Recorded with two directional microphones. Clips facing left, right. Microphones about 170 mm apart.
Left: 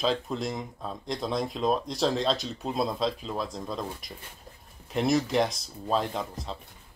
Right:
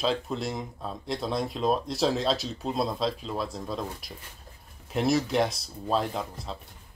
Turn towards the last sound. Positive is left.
turn(degrees=0)  # may be behind; listen again after turning